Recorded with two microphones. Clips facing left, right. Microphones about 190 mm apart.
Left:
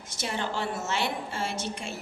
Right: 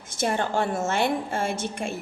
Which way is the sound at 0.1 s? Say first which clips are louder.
Right 7 dB; 50° right (ahead or behind).